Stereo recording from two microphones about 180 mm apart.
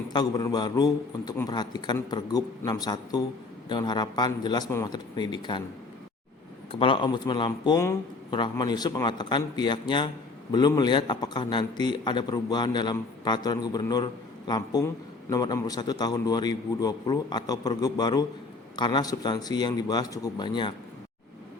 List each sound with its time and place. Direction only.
0.1 s speech: 20° left (ahead or behind)
6.7 s speech: 30° left (ahead or behind)